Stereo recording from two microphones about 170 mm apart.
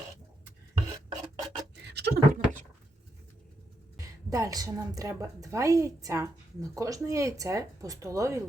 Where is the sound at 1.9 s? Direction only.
75° right (ahead or behind).